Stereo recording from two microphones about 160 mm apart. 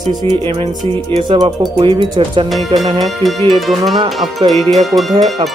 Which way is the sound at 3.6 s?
Centre (ahead or behind).